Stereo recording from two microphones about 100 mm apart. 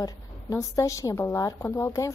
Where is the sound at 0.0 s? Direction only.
35° left (ahead or behind).